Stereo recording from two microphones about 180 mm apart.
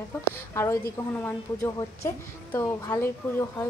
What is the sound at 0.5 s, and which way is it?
A woman's voice, 15° left (ahead or behind).